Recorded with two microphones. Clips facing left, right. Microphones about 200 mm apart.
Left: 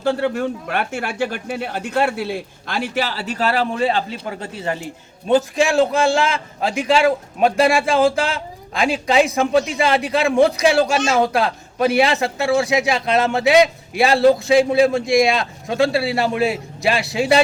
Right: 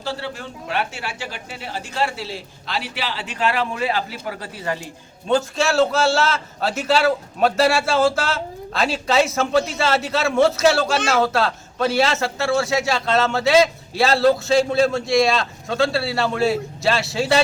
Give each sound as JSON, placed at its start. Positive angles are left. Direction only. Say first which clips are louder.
{"t": 0.0, "sound": "a man's voice", "louder": "left 10 dB", "side_deg": 55}